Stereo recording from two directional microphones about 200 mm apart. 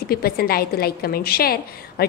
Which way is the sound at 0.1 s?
50° left (ahead or behind).